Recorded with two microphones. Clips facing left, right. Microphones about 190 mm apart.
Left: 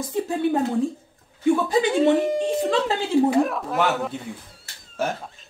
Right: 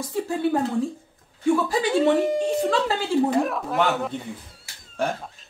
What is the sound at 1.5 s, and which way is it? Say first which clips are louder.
Speech: left 2 dB; 20° left (ahead or behind).